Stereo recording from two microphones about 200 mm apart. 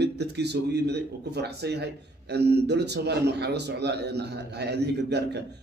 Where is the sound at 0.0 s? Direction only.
55° right (ahead or behind).